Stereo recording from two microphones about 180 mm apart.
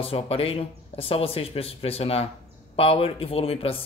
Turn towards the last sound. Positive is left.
turn(degrees=35)  # may be behind; listen again after turning